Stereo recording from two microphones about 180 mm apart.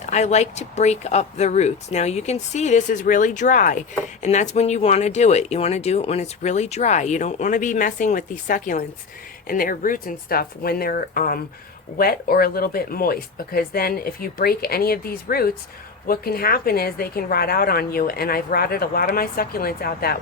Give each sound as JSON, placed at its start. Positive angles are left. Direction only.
{"t": 0.0, "sound": "a woman's voice", "side_deg": 40}